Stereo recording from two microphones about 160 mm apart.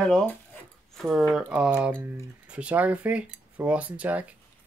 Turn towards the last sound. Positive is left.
turn(degrees=-10)  # may be behind; listen again after turning